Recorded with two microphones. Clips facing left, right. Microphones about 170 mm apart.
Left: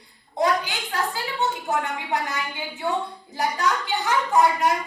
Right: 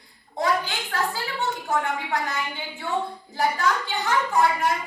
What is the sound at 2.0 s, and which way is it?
A woman's voice, 20° left (ahead or behind).